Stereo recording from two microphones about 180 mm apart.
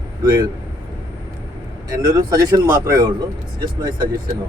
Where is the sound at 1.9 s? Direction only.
20° right (ahead or behind).